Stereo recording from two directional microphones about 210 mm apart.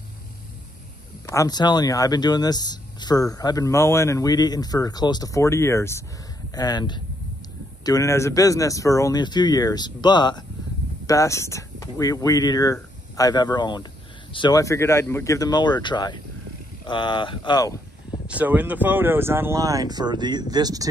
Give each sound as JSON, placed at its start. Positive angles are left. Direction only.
{"t": 1.2, "sound": "speech", "side_deg": 15}
{"t": 18.2, "sound": "speech", "side_deg": -5}